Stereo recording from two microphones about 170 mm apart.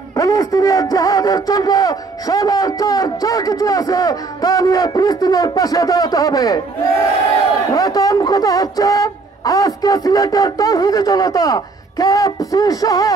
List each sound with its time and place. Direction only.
0.1 s a man's voice: 20° left (ahead or behind)